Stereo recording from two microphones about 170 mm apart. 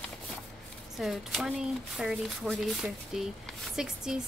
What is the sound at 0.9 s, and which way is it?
A woman's voice, centre (ahead or behind).